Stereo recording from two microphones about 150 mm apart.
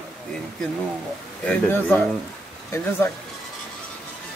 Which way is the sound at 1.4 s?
10° left (ahead or behind).